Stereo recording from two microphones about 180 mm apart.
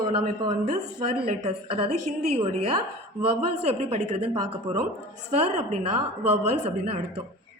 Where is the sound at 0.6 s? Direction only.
40° right (ahead or behind).